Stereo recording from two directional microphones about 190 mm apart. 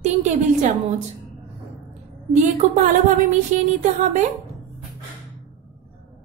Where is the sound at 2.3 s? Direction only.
40° right (ahead or behind).